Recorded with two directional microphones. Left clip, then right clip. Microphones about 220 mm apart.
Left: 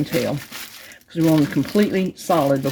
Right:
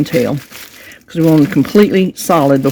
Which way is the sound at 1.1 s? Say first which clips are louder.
Right 7 dB; 55° right (ahead or behind).